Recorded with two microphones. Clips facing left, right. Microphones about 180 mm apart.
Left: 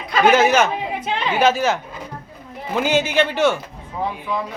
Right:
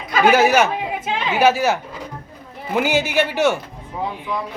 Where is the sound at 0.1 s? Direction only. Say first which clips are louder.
Even; 5° right (ahead or behind).